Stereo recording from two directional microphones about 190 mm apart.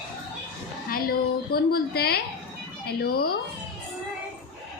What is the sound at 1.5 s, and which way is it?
Speech, 55° left (ahead or behind).